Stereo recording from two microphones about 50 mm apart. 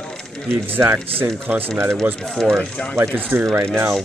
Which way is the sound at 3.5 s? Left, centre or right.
Right.